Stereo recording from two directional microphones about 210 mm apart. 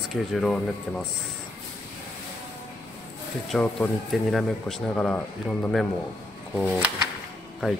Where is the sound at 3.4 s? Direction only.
5° left (ahead or behind).